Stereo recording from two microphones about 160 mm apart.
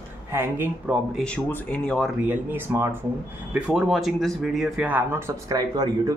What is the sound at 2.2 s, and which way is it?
Speech, 10° right (ahead or behind).